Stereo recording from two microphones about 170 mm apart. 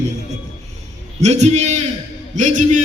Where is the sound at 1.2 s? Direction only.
40° right (ahead or behind).